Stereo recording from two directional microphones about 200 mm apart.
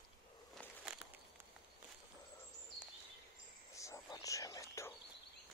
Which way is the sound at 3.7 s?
15° left (ahead or behind).